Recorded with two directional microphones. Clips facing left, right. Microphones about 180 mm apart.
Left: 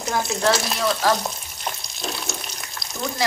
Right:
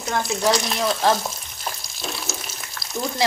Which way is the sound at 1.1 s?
Centre (ahead or behind).